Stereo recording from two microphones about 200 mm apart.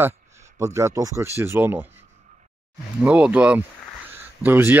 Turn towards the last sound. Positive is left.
turn(degrees=-10)  # may be behind; listen again after turning